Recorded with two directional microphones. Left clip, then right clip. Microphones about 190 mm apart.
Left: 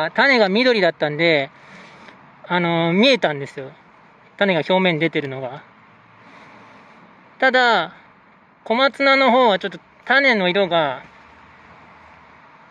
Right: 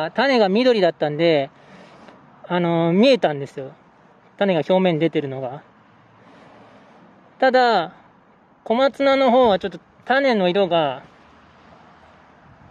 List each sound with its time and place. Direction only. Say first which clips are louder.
0.0 s speech: left 2 dB; 15° right (ahead or behind)
7.4 s speech: even; 20° right (ahead or behind)